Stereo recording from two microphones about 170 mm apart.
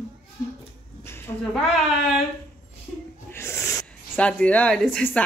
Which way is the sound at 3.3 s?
15° left (ahead or behind).